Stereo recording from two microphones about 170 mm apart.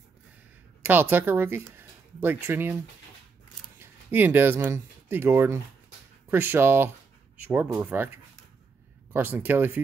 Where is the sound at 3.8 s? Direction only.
10° right (ahead or behind).